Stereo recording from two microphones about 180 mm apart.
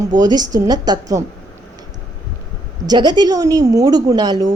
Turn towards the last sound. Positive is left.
turn(degrees=-20)  # may be behind; listen again after turning